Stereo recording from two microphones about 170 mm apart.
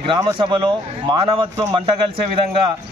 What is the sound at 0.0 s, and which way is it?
A man's voice, 30° right (ahead or behind).